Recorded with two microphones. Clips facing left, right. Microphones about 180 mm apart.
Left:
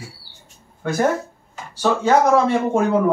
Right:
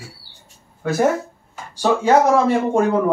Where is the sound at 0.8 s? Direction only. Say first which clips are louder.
Right 2 dB; 5° right (ahead or behind).